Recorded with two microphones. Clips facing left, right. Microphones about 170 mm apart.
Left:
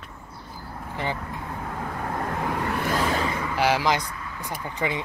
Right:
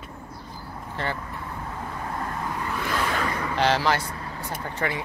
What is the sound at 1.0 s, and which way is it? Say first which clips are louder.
Speech: left 1 dB; 10° left (ahead or behind).